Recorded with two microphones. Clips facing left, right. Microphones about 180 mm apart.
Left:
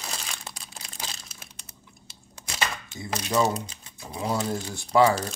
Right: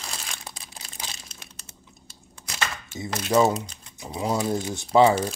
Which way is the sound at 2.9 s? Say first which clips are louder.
Right 5 dB; 20° right (ahead or behind).